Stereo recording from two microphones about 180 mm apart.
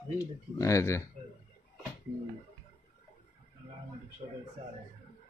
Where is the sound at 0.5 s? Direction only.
15° left (ahead or behind).